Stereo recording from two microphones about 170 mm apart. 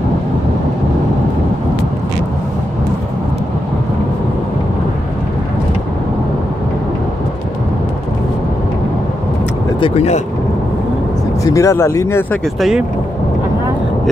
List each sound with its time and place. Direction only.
9.8 s speech: 35° left (ahead or behind)
11.4 s speech: 15° left (ahead or behind)
12.5 s speech: centre (ahead or behind)